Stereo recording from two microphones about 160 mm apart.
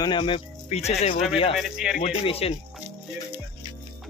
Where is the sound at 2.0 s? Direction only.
40° left (ahead or behind).